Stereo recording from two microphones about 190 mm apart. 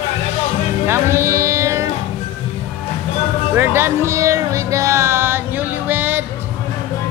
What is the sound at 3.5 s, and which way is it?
Music, 10° right (ahead or behind).